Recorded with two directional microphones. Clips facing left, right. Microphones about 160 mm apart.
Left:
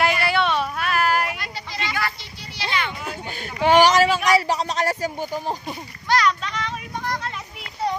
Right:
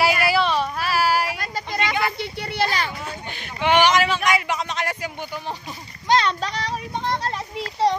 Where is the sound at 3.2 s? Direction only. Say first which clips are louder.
Left 3 dB; 40° left (ahead or behind).